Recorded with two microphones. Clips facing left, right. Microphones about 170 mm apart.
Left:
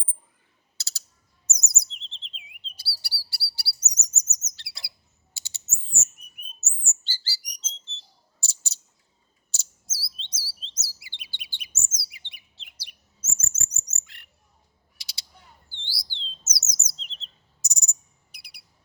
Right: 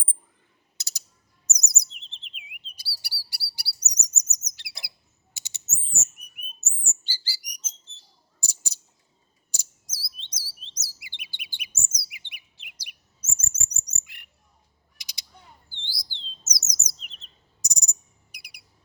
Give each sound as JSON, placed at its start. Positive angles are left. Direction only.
{"t": 0.8, "sound": "bird", "side_deg": -15}
{"t": 1.6, "sound": "chirp", "side_deg": -15}
{"t": 6.7, "sound": "bird", "side_deg": -15}
{"t": 8.4, "sound": "a sound", "side_deg": -15}
{"t": 9.5, "sound": "chirp", "side_deg": -15}
{"t": 14.0, "sound": "bird", "side_deg": -15}
{"t": 14.9, "sound": "mechanisms", "side_deg": -15}
{"t": 15.7, "sound": "chirp", "side_deg": -15}